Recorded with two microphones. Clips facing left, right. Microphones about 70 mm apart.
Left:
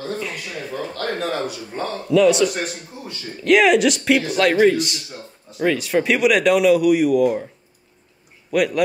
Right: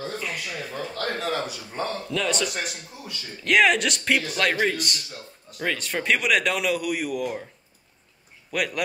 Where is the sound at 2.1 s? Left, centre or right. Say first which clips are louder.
Left 13 dB; centre.